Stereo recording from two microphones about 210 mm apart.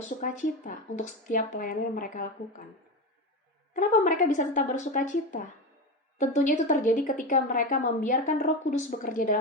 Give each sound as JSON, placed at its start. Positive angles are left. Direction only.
{"t": 0.2, "sound": "a woman's voice", "side_deg": 40}
{"t": 3.8, "sound": "a woman's voice", "side_deg": 40}